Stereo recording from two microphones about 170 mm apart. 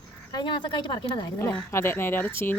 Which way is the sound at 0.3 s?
25° left (ahead or behind).